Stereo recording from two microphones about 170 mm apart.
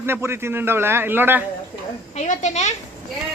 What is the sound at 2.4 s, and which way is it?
Speech, 40° left (ahead or behind).